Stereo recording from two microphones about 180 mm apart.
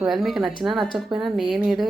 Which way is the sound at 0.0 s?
Centre (ahead or behind).